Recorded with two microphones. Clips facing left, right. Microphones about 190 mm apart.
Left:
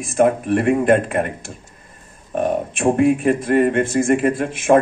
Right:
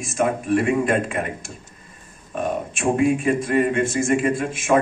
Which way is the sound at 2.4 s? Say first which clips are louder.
Left 5 dB; 55° left (ahead or behind).